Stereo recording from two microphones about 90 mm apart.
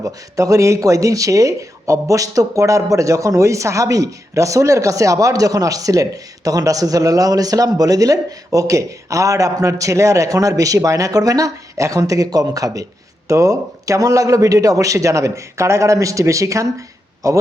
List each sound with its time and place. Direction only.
0.0 s speech: 35° right (ahead or behind)